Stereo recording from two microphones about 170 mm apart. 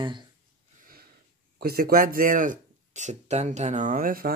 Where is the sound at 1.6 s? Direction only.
60° right (ahead or behind).